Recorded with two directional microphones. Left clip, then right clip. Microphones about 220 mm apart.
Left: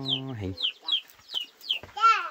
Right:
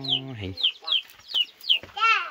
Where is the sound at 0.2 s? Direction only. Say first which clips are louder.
Even; 20° left (ahead or behind).